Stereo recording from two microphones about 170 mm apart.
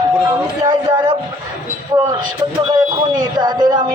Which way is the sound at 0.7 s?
25° right (ahead or behind).